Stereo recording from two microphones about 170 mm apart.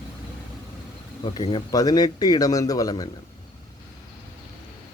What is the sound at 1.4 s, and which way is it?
Speech, 35° left (ahead or behind).